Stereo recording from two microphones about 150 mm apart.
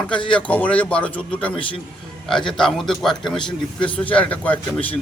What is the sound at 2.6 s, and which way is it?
Speech, centre (ahead or behind).